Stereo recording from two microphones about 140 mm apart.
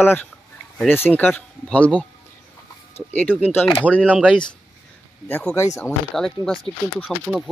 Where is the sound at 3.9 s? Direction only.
10° right (ahead or behind).